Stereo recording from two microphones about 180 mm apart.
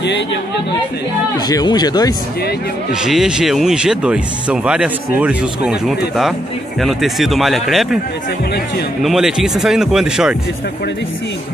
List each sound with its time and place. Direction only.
0.0 s speech: 80° left
1.5 s speech: 20° left (ahead or behind)
2.9 s speech: 5° right (ahead or behind)
9.0 s speech: centre (ahead or behind)